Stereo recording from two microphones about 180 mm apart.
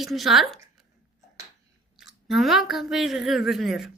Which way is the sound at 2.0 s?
Centre (ahead or behind).